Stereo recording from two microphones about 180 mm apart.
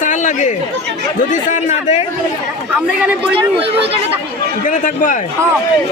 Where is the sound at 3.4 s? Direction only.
30° right (ahead or behind).